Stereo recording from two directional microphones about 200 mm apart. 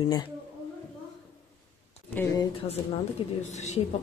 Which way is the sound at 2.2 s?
10° left (ahead or behind).